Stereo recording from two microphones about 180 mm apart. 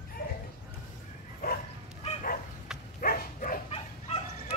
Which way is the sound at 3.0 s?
50° left (ahead or behind).